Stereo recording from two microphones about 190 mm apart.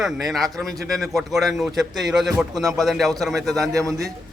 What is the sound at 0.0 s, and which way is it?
A man's voice, centre (ahead or behind).